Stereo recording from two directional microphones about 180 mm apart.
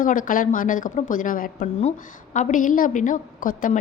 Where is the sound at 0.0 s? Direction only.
50° left (ahead or behind).